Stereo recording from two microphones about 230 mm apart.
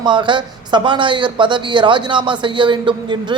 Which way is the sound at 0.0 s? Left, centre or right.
Right.